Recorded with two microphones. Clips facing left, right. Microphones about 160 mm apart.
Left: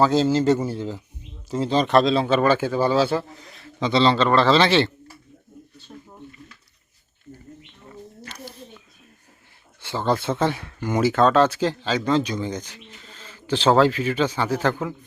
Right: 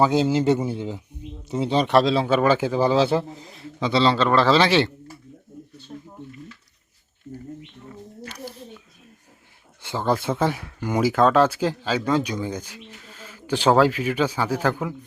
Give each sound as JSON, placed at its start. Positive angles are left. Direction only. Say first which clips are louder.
{"t": 0.0, "sound": "speech", "louder": "left 1 dB", "side_deg": -15}
{"t": 3.8, "sound": "speech", "louder": "left 1 dB", "side_deg": -5}
{"t": 8.2, "sound": "a sound", "louder": "right 6 dB", "side_deg": -10}
{"t": 9.8, "sound": "speech", "louder": "even", "side_deg": -15}